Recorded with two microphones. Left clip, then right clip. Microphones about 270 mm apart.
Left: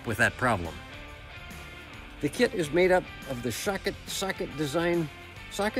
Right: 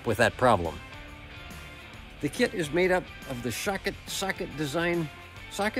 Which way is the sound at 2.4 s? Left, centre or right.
Centre.